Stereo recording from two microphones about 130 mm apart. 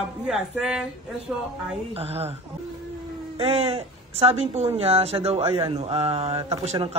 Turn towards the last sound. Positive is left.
turn(degrees=-50)  # may be behind; listen again after turning